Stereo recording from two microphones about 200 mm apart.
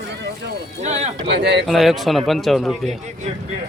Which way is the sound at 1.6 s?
Centre (ahead or behind).